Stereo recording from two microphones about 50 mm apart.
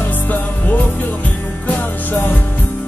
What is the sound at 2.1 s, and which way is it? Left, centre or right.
Music, left.